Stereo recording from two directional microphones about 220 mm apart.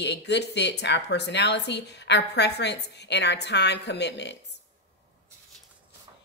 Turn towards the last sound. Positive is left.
turn(degrees=50)  # may be behind; listen again after turning